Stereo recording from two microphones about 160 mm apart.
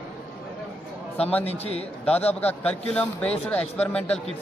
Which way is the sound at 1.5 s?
40° left (ahead or behind).